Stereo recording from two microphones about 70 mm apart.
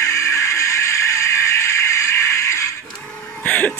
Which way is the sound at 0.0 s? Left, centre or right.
Left.